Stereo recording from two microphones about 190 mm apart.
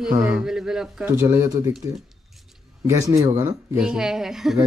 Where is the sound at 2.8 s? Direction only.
20° right (ahead or behind).